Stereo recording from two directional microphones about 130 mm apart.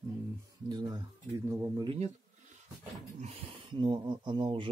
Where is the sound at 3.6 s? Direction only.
40° right (ahead or behind).